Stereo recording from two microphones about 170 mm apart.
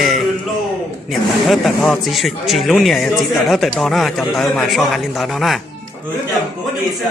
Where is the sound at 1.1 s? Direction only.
Centre (ahead or behind).